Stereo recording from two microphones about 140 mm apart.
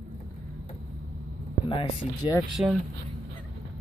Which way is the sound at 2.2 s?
40° left (ahead or behind).